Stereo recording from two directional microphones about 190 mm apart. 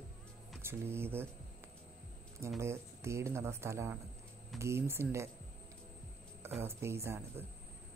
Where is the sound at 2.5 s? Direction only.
15° right (ahead or behind).